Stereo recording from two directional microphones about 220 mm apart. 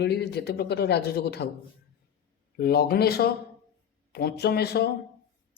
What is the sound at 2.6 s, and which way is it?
Speech, 45° left (ahead or behind).